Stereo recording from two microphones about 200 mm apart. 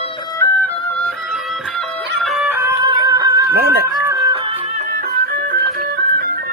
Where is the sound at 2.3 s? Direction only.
10° right (ahead or behind).